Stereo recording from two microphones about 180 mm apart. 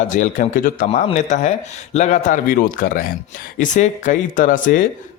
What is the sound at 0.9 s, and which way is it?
A man's voice, 35° left (ahead or behind).